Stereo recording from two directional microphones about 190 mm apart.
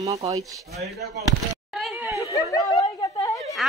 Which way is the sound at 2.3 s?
20° left (ahead or behind).